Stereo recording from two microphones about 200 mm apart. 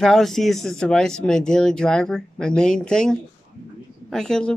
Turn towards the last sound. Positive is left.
turn(degrees=5)  # may be behind; listen again after turning